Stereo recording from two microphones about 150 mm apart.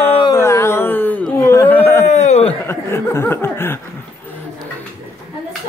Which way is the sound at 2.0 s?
50° left (ahead or behind).